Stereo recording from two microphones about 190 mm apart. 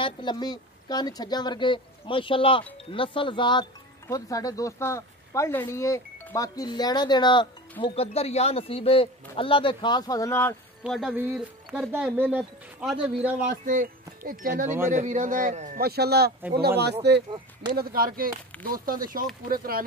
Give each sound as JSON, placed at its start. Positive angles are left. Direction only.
{"t": 0.0, "sound": "speech", "side_deg": 25}
{"t": 10.8, "sound": "speech", "side_deg": 0}
{"t": 13.5, "sound": "a man's voice", "side_deg": -45}